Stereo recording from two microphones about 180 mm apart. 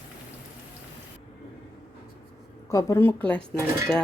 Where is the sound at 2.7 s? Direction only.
20° left (ahead or behind).